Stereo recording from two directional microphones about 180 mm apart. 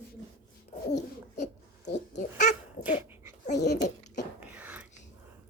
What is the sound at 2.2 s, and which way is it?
Speech, 45° left (ahead or behind).